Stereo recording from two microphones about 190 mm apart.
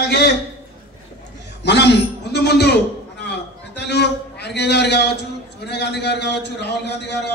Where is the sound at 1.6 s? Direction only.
60° left (ahead or behind).